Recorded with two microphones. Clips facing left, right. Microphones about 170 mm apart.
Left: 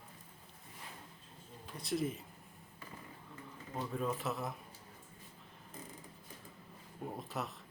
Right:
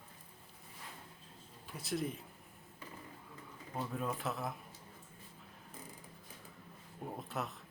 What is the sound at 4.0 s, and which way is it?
Speech, centre (ahead or behind).